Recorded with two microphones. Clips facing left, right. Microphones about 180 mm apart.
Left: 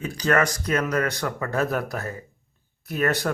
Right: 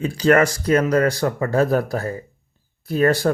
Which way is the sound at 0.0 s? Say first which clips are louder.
Right 6 dB; 25° right (ahead or behind).